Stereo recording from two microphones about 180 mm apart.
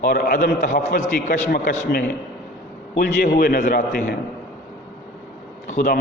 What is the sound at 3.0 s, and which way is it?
A man's voice, 50° left (ahead or behind).